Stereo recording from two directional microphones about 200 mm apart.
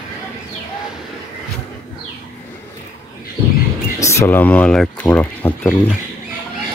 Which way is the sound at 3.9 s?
15° left (ahead or behind).